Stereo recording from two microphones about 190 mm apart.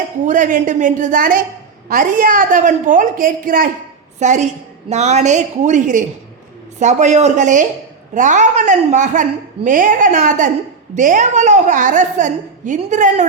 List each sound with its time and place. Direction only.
0.3 s a woman's voice: 45° right (ahead or behind)